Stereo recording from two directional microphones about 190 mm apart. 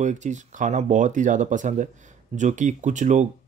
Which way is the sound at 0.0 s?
40° right (ahead or behind).